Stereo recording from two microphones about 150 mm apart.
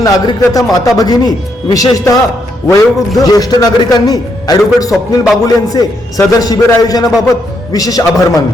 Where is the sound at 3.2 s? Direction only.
25° left (ahead or behind).